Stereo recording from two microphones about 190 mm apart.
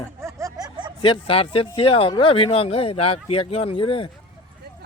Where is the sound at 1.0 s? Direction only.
30° left (ahead or behind).